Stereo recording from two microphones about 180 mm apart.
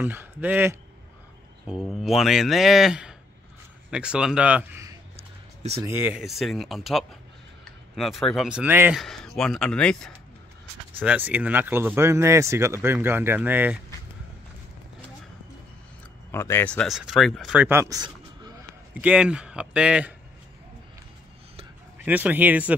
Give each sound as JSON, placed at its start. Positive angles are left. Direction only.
{"t": 0.0, "sound": "speech", "side_deg": -10}
{"t": 9.0, "sound": "speech", "side_deg": 0}
{"t": 11.0, "sound": "speech", "side_deg": -10}
{"t": 16.3, "sound": "speech", "side_deg": 15}
{"t": 17.6, "sound": "a sound", "side_deg": -15}
{"t": 18.9, "sound": "speech", "side_deg": -5}
{"t": 21.9, "sound": "speech", "side_deg": -10}